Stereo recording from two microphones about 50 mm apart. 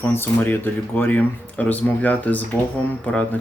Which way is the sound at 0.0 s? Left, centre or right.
Left.